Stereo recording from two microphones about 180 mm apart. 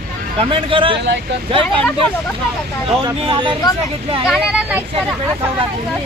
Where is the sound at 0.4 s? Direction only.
30° right (ahead or behind).